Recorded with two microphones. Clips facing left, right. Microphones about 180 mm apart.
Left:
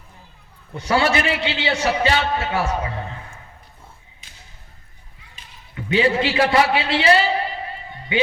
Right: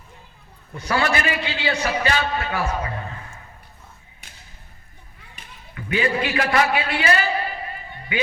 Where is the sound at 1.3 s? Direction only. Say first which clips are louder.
Left 2 dB; 75° left (ahead or behind).